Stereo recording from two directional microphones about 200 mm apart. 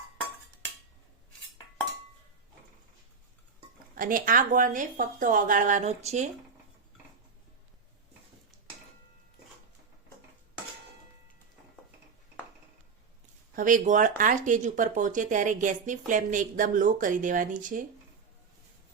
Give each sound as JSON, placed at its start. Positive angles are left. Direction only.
{"t": 3.9, "sound": "a woman's voice", "side_deg": -45}
{"t": 13.6, "sound": "a woman's voice", "side_deg": -40}